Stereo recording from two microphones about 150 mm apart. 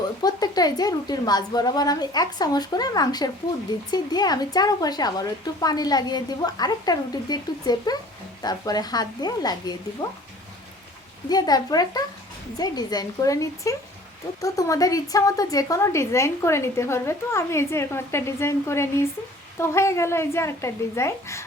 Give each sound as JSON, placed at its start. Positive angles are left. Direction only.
{"t": 0.2, "sound": "a woman's voice", "side_deg": 25}
{"t": 11.3, "sound": "a woman's voice", "side_deg": 25}